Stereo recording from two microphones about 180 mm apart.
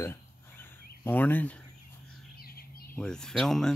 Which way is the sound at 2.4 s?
55° left (ahead or behind).